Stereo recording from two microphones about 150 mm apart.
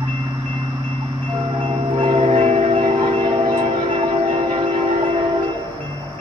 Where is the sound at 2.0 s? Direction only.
40° right (ahead or behind).